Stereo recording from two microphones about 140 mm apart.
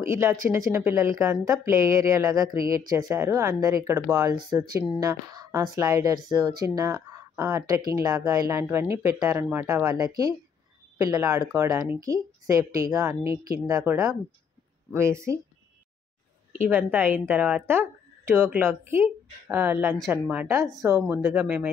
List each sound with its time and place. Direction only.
0.0 s speech: 20° right (ahead or behind)
16.6 s speech: 15° right (ahead or behind)